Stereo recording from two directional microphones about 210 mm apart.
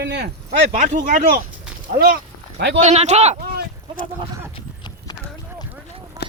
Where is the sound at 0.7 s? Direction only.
40° right (ahead or behind).